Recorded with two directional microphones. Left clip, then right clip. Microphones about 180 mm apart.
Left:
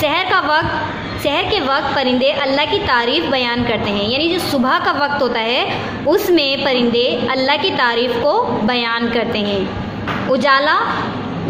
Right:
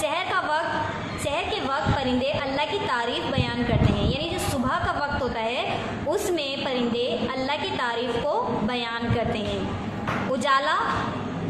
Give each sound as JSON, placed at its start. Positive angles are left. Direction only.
{"t": 0.0, "sound": "a sound", "side_deg": 40}
{"t": 1.2, "sound": "a woman's voice", "side_deg": 40}
{"t": 10.4, "sound": "a woman's voice", "side_deg": 30}